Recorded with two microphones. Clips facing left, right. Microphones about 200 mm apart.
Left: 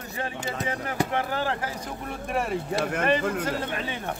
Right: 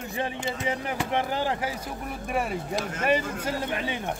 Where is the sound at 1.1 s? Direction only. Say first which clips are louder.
Right 1 dB; 15° right (ahead or behind).